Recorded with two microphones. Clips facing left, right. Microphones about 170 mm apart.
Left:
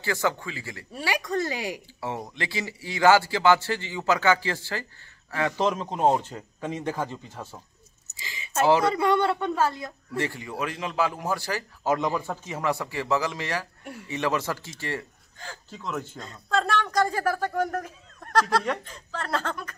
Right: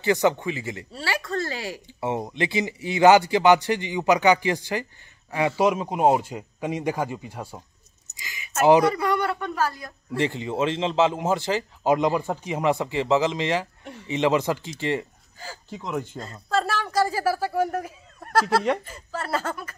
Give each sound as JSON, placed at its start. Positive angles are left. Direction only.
{"t": 0.0, "sound": "speech", "side_deg": -20}
{"t": 0.9, "sound": "a sound", "side_deg": 15}
{"t": 2.0, "sound": "speech", "side_deg": -20}
{"t": 8.2, "sound": "a sound", "side_deg": 30}
{"t": 8.6, "sound": "speech", "side_deg": -20}
{"t": 8.9, "sound": "speech", "side_deg": 25}
{"t": 10.1, "sound": "speech", "side_deg": -20}
{"t": 15.3, "sound": "speech", "side_deg": -5}
{"t": 16.2, "sound": "speech", "side_deg": -5}